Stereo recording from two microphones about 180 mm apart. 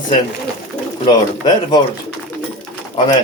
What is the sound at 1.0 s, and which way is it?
Speech, 25° left (ahead or behind).